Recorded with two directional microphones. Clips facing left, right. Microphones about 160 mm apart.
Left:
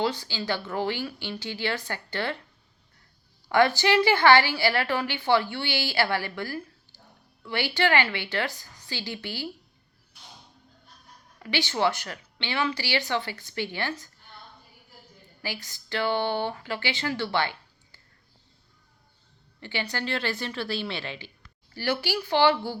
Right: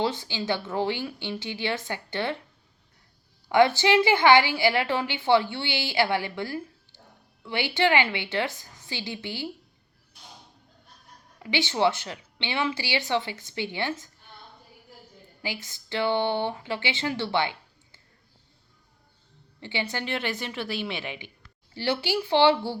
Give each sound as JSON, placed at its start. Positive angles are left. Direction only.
{"t": 0.0, "sound": "a woman's voice", "side_deg": -20}
{"t": 3.5, "sound": "a woman's voice", "side_deg": -20}
{"t": 11.3, "sound": "a woman's voice", "side_deg": -20}
{"t": 15.4, "sound": "speech", "side_deg": -20}
{"t": 19.5, "sound": "a woman's voice", "side_deg": -20}